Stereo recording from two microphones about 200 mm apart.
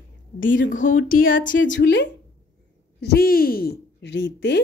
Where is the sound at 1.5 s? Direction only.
65° left (ahead or behind).